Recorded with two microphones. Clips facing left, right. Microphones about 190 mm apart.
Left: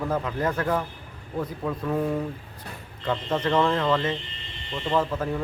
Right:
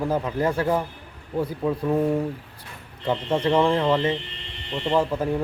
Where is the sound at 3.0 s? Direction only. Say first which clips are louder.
Right 3 dB; 15° right (ahead or behind).